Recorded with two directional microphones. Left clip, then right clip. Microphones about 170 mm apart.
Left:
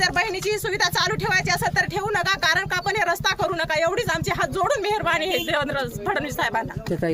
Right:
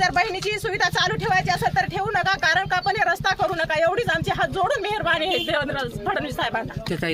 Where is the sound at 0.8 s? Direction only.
35° left (ahead or behind).